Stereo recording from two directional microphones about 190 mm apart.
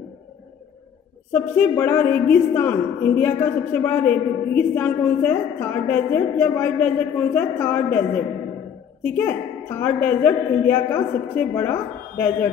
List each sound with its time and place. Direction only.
1.3 s a woman's voice: 10° left (ahead or behind)